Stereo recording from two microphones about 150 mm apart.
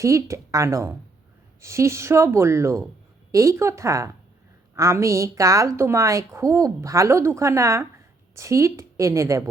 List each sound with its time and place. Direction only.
0.0 s a woman's voice: 20° right (ahead or behind)